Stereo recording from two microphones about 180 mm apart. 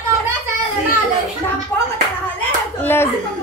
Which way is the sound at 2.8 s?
10° left (ahead or behind).